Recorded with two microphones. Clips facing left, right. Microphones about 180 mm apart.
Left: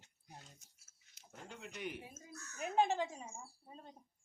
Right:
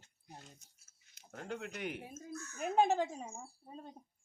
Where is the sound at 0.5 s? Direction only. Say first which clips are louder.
Right 2 dB; 10° left (ahead or behind).